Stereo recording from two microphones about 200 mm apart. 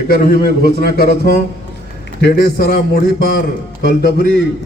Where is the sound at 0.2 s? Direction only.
50° left (ahead or behind).